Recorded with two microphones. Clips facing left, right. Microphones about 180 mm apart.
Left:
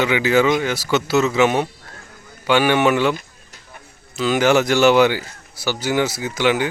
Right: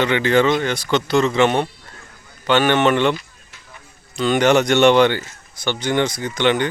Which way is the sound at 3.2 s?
50° left (ahead or behind).